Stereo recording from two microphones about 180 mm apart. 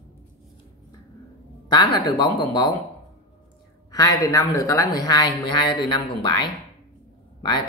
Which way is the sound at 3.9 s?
20° left (ahead or behind).